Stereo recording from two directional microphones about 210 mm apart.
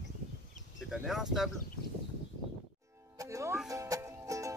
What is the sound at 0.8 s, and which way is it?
Speech, centre (ahead or behind).